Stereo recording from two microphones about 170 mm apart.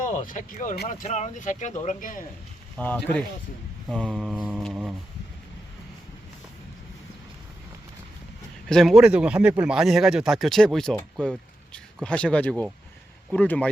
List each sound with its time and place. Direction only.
0.1 s speech: 50° left (ahead or behind)
2.7 s speech: 10° left (ahead or behind)
3.8 s mantra: centre (ahead or behind)
8.7 s speech: centre (ahead or behind)
11.2 s a sound: 5° left (ahead or behind)
12.0 s speech: 5° left (ahead or behind)